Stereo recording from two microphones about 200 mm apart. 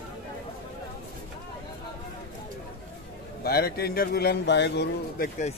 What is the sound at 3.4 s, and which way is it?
A man's voice, 50° left (ahead or behind).